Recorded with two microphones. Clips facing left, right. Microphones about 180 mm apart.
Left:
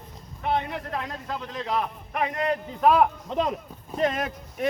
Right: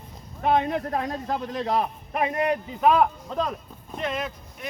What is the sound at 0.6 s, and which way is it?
A man's voice, 40° right (ahead or behind).